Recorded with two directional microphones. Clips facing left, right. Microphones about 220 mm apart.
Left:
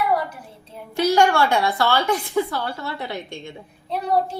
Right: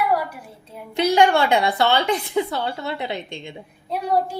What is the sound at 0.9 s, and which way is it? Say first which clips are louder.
A woman's voice: right 1 dB; 20° right (ahead or behind).